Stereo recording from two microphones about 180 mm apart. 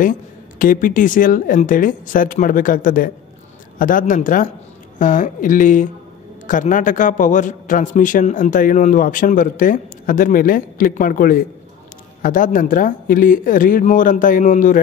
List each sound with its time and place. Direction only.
0.0 s a man's voice: 50° left (ahead or behind)